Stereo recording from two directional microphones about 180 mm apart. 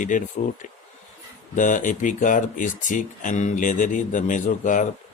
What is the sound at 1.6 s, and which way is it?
Speech, 45° left (ahead or behind).